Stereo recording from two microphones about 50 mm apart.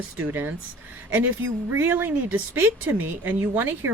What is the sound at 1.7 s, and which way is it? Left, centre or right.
Speech, right.